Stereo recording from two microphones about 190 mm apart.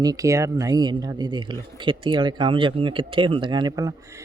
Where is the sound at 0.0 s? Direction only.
20° right (ahead or behind).